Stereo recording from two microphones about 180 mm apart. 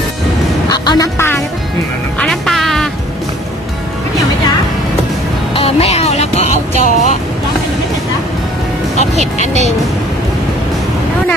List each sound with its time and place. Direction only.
0.7 s a man's voice: 20° left (ahead or behind)
2.1 s music: centre (ahead or behind)
5.5 s music: 35° left (ahead or behind)
6.8 s speech: 40° left (ahead or behind)
9.2 s speech: 40° left (ahead or behind)